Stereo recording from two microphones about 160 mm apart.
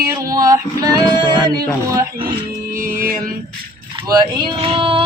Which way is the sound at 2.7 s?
60° right (ahead or behind).